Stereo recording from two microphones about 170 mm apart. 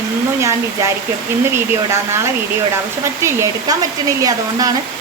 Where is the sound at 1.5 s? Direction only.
15° right (ahead or behind).